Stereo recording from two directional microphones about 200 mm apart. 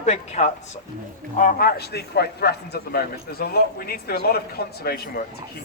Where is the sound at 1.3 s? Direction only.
45° left (ahead or behind).